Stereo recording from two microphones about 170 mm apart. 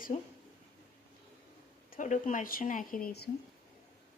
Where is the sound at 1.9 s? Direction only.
45° left (ahead or behind); by 3.3 s 65° left (ahead or behind).